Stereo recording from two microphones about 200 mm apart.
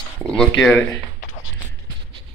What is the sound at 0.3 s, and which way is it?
Speech, 5° left (ahead or behind).